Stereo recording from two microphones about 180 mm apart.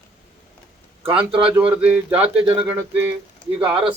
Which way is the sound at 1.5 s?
10° right (ahead or behind).